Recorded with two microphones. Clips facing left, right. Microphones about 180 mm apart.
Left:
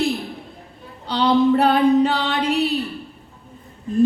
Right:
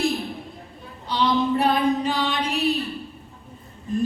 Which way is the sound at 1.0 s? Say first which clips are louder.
Left 5 dB; 65° left (ahead or behind).